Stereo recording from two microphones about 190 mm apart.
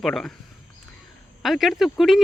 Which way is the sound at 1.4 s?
Centre (ahead or behind).